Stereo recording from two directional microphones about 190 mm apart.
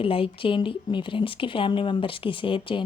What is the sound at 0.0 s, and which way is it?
Speech, 30° left (ahead or behind).